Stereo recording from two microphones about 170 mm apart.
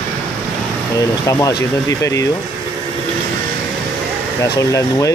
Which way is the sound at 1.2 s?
20° left (ahead or behind).